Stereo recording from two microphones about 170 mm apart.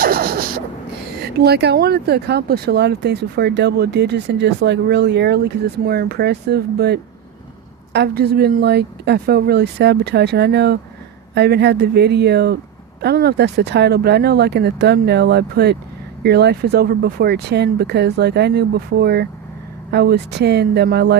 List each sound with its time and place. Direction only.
0.0 s a sound: 60° right (ahead or behind)
1.5 s speech: 70° right (ahead or behind)
5.8 s speech: 60° right (ahead or behind)